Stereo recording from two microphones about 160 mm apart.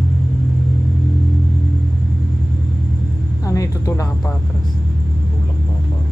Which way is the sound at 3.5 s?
20° left (ahead or behind).